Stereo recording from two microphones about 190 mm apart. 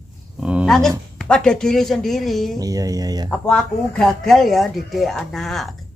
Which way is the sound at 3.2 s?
5° left (ahead or behind).